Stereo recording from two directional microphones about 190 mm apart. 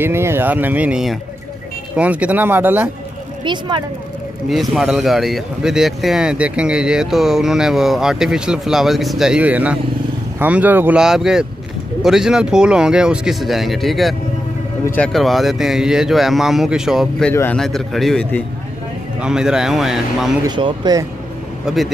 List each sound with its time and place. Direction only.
0.0 s speech: 15° right (ahead or behind)
3.4 s speech: 25° right (ahead or behind)
4.5 s speech: centre (ahead or behind)
17.3 s speech: 10° left (ahead or behind)
20.4 s speech: 25° right (ahead or behind)
21.6 s speech: centre (ahead or behind)